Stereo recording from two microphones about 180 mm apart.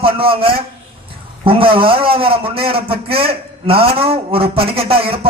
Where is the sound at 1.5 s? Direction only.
30° right (ahead or behind).